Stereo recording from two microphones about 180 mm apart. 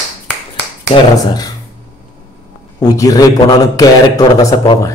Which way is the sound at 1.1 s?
20° left (ahead or behind).